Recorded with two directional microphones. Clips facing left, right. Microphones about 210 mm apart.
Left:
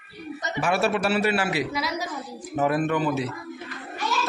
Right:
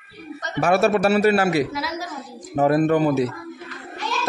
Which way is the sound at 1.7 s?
Centre (ahead or behind).